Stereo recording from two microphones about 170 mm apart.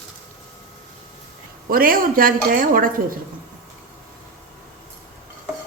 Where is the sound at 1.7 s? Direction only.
60° right (ahead or behind).